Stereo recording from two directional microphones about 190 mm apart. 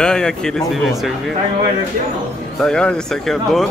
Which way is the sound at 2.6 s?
5° left (ahead or behind).